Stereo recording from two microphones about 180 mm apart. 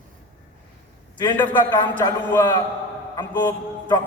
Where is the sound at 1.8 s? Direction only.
10° left (ahead or behind).